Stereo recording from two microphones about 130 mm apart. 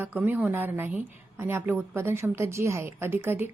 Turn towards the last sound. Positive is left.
turn(degrees=-15)  # may be behind; listen again after turning